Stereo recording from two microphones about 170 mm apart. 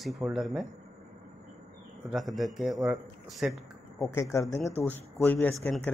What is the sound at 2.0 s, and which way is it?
Speech, centre (ahead or behind).